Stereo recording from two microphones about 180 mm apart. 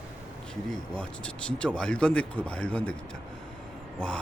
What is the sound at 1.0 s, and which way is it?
Speech, 5° left (ahead or behind).